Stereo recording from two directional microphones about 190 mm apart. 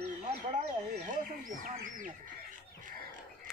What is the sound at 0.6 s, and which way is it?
Bird, 45° right (ahead or behind).